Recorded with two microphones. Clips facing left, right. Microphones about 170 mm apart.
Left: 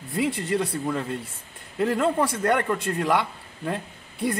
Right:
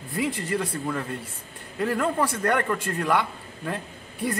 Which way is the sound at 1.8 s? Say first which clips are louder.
Left 2 dB; 15° left (ahead or behind).